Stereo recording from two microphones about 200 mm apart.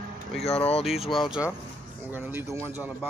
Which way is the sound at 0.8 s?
Centre (ahead or behind).